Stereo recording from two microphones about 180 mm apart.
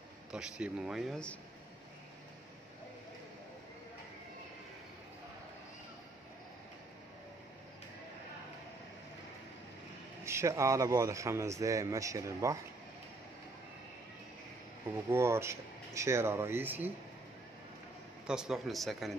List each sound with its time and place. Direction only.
0.3 s a man's voice: 5° right (ahead or behind)
10.2 s a man's voice: 15° right (ahead or behind)
15.0 s a man's voice: 15° right (ahead or behind)
18.2 s a man's voice: 5° right (ahead or behind)